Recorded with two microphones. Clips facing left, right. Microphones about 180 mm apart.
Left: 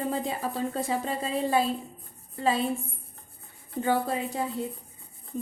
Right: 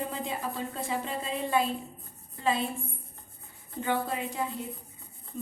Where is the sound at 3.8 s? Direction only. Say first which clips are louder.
Left 4 dB; 35° left (ahead or behind).